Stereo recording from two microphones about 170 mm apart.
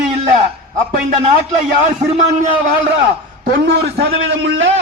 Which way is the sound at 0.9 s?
40° right (ahead or behind).